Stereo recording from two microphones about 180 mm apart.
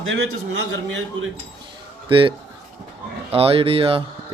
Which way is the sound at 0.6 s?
80° right.